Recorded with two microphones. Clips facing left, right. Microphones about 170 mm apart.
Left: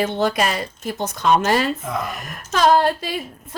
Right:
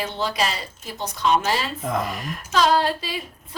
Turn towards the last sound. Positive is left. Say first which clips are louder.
# left 4 dB
turn(degrees=50)  # may be behind; listen again after turning